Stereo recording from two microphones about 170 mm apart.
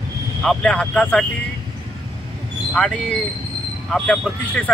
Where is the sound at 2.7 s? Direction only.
5° left (ahead or behind).